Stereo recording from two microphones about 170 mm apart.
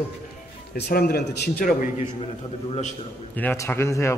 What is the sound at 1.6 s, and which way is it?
Speech, 50° left (ahead or behind).